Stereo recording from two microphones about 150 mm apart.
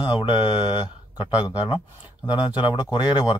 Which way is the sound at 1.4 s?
30° left (ahead or behind).